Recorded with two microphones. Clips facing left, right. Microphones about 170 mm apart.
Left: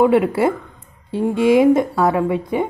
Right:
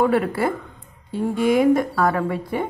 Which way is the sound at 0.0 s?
20° left (ahead or behind).